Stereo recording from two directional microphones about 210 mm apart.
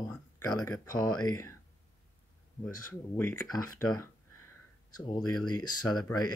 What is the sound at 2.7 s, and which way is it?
Speech, 15° left (ahead or behind).